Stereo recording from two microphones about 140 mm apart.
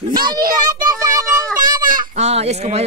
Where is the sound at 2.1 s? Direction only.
50° right (ahead or behind).